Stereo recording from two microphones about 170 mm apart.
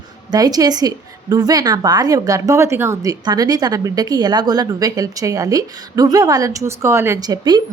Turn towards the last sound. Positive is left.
turn(degrees=-25)  # may be behind; listen again after turning